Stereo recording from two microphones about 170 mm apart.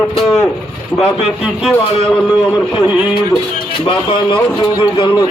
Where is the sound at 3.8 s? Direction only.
30° left (ahead or behind).